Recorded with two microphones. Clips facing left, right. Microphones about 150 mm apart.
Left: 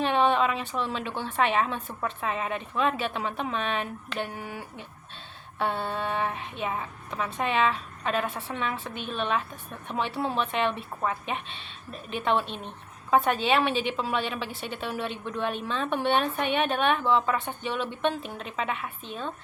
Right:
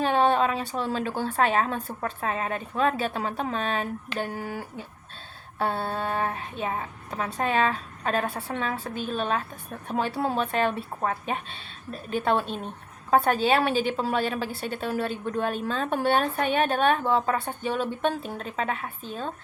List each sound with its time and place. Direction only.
0.0 s a woman's voice: 40° right (ahead or behind)